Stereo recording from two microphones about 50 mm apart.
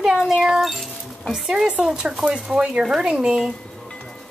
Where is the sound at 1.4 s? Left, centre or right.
Centre.